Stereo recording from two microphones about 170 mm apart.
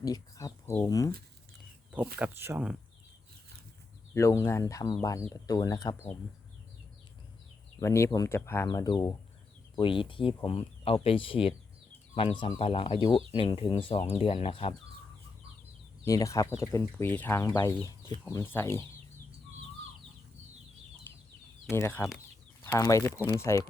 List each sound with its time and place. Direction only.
0.0 s a sound: 20° left (ahead or behind)
0.8 s speech: 20° left (ahead or behind)
2.1 s speech: 10° right (ahead or behind)
4.1 s speech: 15° left (ahead or behind)
7.8 s speech: 15° left (ahead or behind); by 14.8 s 30° left (ahead or behind)
16.0 s speech: 20° left (ahead or behind)
21.7 s speech: 15° left (ahead or behind)